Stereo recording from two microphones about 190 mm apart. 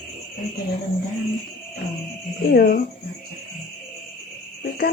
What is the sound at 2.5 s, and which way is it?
Speech, 50° left (ahead or behind).